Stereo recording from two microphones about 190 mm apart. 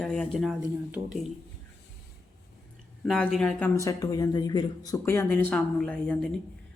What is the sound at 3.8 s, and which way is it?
Speech, 20° left (ahead or behind).